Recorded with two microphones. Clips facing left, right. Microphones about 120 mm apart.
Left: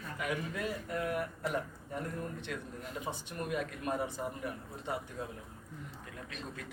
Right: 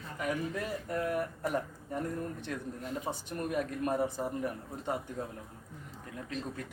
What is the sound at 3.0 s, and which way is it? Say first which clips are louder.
Speech: right 1 dB; 40° right (ahead or behind).